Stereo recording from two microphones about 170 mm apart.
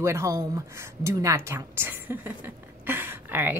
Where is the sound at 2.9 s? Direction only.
10° right (ahead or behind).